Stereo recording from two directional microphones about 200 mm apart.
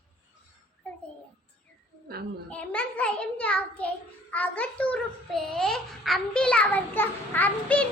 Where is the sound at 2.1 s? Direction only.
50° right (ahead or behind).